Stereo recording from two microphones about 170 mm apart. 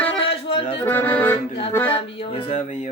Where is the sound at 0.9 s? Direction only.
10° left (ahead or behind).